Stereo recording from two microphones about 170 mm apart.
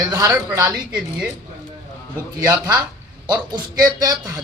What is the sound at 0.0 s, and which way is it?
Speech, 20° right (ahead or behind).